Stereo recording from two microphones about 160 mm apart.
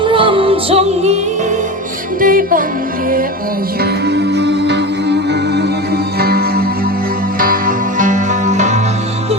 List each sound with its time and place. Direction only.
0.0 s music: 30° right (ahead or behind)
2.2 s music: 60° right (ahead or behind)
4.0 s music: 90° right
6.1 s music: 75° right (ahead or behind)
7.3 s music: 60° right (ahead or behind)